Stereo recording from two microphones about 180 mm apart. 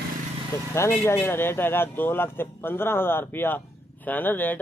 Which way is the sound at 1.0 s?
15° left (ahead or behind).